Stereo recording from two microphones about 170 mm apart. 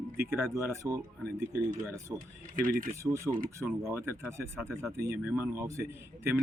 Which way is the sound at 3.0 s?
15° right (ahead or behind).